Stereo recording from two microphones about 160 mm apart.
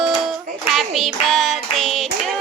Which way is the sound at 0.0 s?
Centre (ahead or behind).